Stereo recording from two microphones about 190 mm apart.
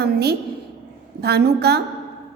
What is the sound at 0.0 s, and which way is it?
A woman's voice, 60° right (ahead or behind).